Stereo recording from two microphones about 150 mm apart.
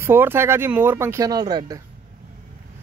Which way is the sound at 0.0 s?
15° right (ahead or behind).